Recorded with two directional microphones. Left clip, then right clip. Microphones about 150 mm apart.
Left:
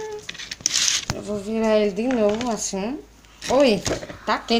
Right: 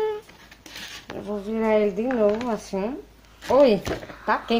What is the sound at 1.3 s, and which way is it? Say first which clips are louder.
A child's voice: left 1 dB; 5° right (ahead or behind).